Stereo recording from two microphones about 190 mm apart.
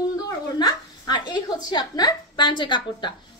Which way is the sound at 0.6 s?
20° left (ahead or behind).